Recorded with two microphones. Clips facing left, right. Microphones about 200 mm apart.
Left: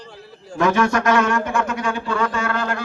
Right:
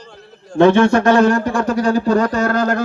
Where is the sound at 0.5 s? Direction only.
30° right (ahead or behind).